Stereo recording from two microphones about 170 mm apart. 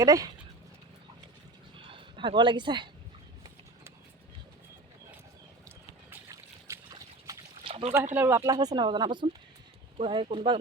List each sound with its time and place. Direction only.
0.0 s speech: 20° right (ahead or behind)
1.7 s a sound: 30° right (ahead or behind)
6.2 s trickle: 20° right (ahead or behind)
8.1 s speech: 10° right (ahead or behind); by 10.6 s 30° right (ahead or behind)